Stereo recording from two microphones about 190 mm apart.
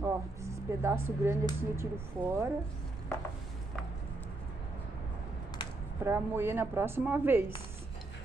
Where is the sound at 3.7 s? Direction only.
5° left (ahead or behind).